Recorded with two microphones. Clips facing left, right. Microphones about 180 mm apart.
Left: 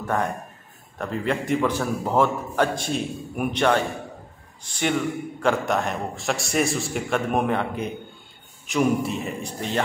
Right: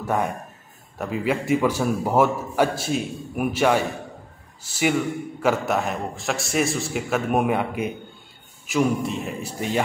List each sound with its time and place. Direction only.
0.0 s a man's voice: 10° right (ahead or behind)